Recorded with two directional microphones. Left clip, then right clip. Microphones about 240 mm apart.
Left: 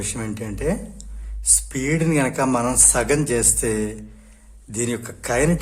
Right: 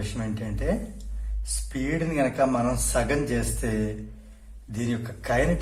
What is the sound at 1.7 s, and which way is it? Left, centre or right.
Speech, left.